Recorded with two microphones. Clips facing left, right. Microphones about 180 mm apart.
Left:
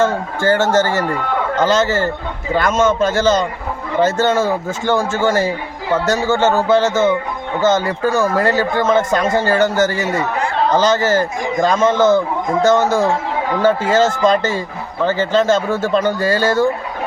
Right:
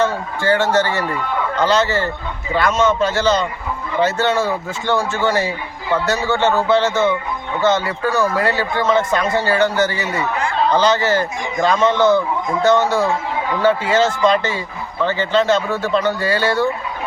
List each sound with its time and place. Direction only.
0.0 s a man's voice: 45° left (ahead or behind)